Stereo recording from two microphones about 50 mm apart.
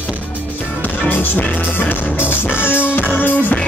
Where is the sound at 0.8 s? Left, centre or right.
Left.